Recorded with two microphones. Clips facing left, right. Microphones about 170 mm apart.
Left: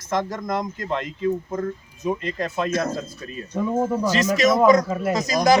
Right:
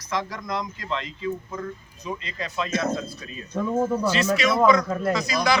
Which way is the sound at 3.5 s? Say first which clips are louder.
Left 1 dB; 10° left (ahead or behind).